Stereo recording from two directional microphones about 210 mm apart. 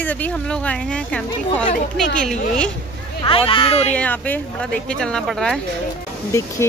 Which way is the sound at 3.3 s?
25° left (ahead or behind).